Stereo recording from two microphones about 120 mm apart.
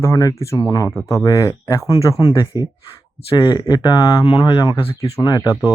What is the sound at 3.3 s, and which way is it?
Speech, 35° left (ahead or behind).